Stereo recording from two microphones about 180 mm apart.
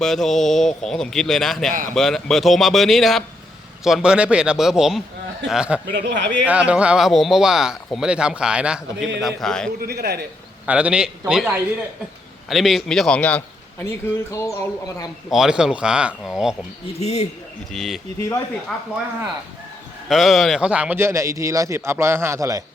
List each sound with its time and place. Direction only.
0.0 s speech: centre (ahead or behind)
5.8 s speech: 70° right (ahead or behind)
6.4 s speech: 5° right (ahead or behind)
9.8 s a man's voice: 60° right (ahead or behind)
10.7 s a man's voice: 5° right (ahead or behind); by 14.5 s 15° left (ahead or behind)
15.3 s speech: 5° right (ahead or behind)
17.0 s speech: 35° left (ahead or behind)
17.7 s speech: centre (ahead or behind)
20.1 s a man's voice: centre (ahead or behind); by 22.6 s 20° right (ahead or behind)